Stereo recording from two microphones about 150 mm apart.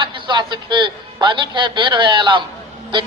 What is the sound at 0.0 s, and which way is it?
A man's voice, 30° right (ahead or behind).